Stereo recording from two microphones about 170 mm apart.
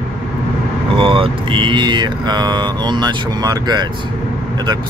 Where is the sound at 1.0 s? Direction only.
30° right (ahead or behind).